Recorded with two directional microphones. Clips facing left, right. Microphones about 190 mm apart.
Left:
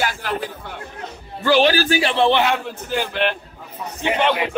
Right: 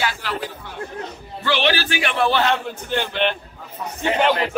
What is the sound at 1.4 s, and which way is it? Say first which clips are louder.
Speech: left 5 dB; 40° left (ahead or behind).